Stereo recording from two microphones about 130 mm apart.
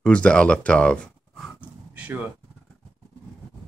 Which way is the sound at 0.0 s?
10° left (ahead or behind).